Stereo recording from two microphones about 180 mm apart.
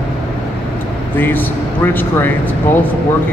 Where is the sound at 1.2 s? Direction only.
10° left (ahead or behind).